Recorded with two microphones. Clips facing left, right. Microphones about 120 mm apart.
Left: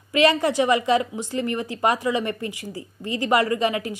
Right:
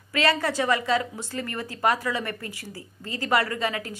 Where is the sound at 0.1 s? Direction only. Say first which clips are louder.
Left 5 dB; 15° left (ahead or behind).